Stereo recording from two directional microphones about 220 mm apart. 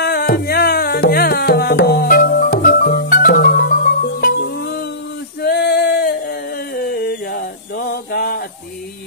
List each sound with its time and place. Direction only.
0.0 s music: 45° left (ahead or behind)
5.4 s singing: 45° left (ahead or behind)